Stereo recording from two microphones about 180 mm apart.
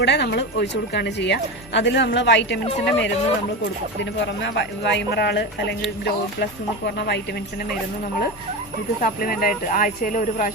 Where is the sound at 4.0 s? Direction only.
75° left (ahead or behind); by 7.7 s 60° left (ahead or behind).